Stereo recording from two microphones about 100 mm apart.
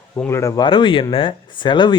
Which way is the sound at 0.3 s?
25° left (ahead or behind).